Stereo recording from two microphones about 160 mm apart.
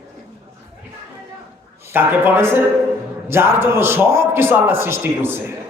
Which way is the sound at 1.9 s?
15° right (ahead or behind).